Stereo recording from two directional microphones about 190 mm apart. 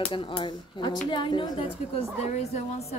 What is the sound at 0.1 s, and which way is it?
A woman's voice, 25° left (ahead or behind).